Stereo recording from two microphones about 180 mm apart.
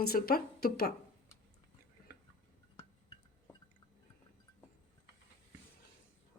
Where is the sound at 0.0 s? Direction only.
60° left (ahead or behind).